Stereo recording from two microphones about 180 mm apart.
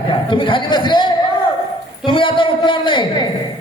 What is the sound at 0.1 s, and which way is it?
A man's voice, 25° left (ahead or behind).